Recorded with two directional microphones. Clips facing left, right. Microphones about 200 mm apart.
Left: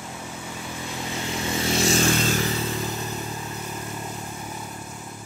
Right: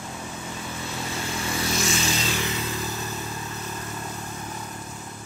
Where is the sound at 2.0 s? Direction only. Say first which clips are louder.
Left 5 dB; 50° left (ahead or behind); by 2.7 s 35° left (ahead or behind).